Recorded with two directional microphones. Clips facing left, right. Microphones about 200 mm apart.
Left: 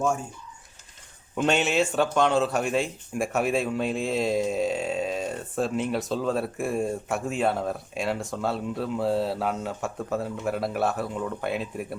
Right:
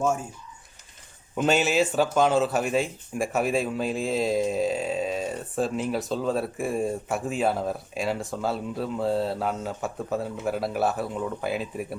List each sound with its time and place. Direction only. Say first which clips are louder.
1.4 s speech: right 1 dB; 5° right (ahead or behind)